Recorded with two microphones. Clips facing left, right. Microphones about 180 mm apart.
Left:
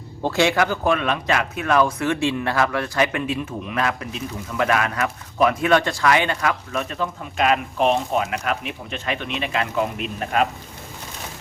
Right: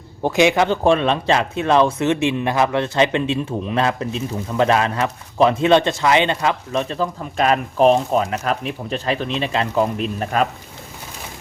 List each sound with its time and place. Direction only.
0.2 s speech: 15° right (ahead or behind); by 10.4 s 35° right (ahead or behind)